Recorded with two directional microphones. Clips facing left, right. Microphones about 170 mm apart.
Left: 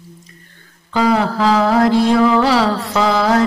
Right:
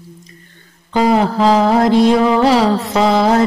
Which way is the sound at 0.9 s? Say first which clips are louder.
Right 2 dB; 20° right (ahead or behind).